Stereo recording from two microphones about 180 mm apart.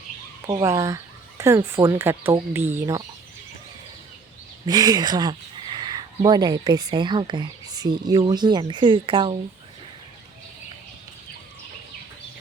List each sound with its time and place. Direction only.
0.4 s speech: 20° right (ahead or behind)
4.6 s speech: 20° right (ahead or behind)